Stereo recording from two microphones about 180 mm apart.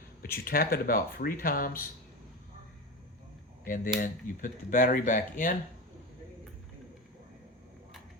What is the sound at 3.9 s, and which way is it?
Speech, 45° left (ahead or behind).